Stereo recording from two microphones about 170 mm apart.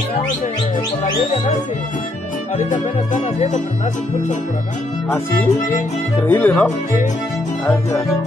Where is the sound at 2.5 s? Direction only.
45° left (ahead or behind).